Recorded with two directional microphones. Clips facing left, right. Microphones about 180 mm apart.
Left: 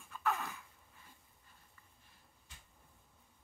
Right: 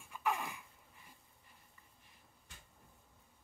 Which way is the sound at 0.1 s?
15° right (ahead or behind).